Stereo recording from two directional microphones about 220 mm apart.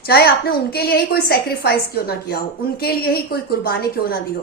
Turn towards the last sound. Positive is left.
turn(degrees=45)  # may be behind; listen again after turning